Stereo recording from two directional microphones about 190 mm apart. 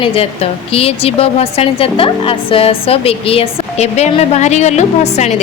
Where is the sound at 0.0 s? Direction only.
30° left (ahead or behind).